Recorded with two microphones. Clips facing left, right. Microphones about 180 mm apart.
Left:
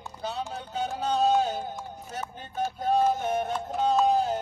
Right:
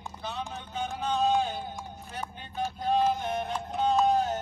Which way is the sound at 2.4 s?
45° left (ahead or behind).